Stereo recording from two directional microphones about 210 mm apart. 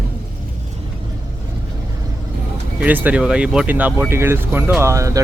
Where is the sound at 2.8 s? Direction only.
10° right (ahead or behind).